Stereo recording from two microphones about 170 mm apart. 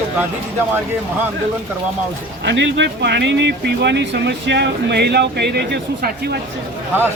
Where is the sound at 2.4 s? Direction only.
90° right; by 6.3 s 70° right (ahead or behind).